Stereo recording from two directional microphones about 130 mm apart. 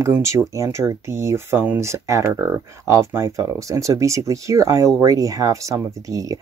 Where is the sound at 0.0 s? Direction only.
20° right (ahead or behind).